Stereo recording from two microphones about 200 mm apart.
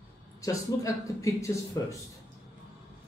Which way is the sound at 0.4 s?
15° left (ahead or behind).